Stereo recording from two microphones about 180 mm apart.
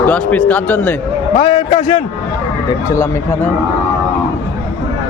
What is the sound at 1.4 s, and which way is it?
Speech, 25° left (ahead or behind).